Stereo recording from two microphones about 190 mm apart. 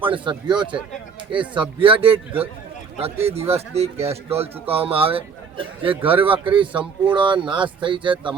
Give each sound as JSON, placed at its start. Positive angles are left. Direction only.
{"t": 0.1, "sound": "a man's voice", "side_deg": -25}